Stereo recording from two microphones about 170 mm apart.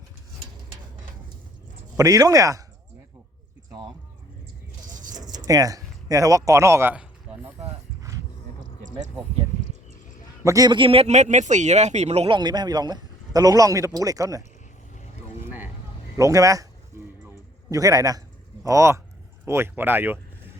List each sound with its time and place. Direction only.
2.0 s a man's voice: 20° right (ahead or behind)
5.2 s zipper: 45° right (ahead or behind)
5.5 s a man's voice: 20° right (ahead or behind)
10.4 s a man's voice: 20° right (ahead or behind); by 12.4 s 35° right (ahead or behind)
12.4 s a man's voice: 25° right (ahead or behind)
16.1 s a sound: 20° right (ahead or behind)
18.6 s speech: 20° right (ahead or behind)